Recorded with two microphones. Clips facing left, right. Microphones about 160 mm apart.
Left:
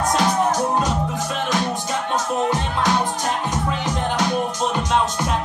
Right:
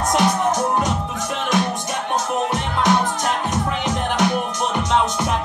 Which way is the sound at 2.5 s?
20° right (ahead or behind).